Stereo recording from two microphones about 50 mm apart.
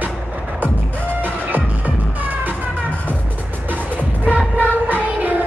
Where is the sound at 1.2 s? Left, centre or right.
Right.